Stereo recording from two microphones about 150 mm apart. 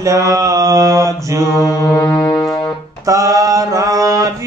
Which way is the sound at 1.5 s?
20° left (ahead or behind).